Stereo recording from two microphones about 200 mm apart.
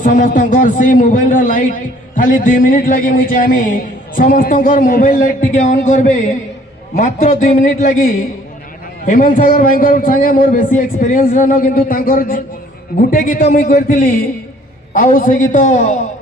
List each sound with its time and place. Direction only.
0.0 s a man's voice: 45° left (ahead or behind)